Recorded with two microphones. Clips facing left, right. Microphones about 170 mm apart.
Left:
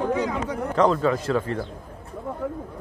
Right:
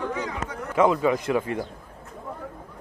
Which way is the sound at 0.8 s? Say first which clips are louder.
Even; 10° right (ahead or behind).